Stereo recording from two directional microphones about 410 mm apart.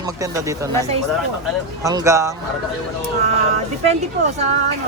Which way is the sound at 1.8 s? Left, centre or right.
Centre.